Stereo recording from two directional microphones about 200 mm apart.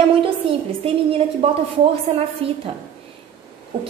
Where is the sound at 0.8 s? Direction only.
30° right (ahead or behind).